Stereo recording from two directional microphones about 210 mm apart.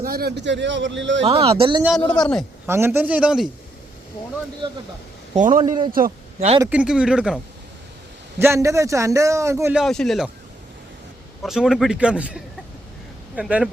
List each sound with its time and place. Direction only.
0.0 s a man's voice: 45° right (ahead or behind)
1.2 s speech: 30° right (ahead or behind)
2.6 s a man's voice: 10° right (ahead or behind)
5.3 s a man's voice: 35° right (ahead or behind)
5.5 s speech: 20° right (ahead or behind)
5.9 s a man's voice: 40° right (ahead or behind)
6.6 s a man's voice: 5° right (ahead or behind)
8.4 s a man's voice: 15° right (ahead or behind)
9.8 s a man's voice: centre (ahead or behind)
11.4 s a man's voice: centre (ahead or behind)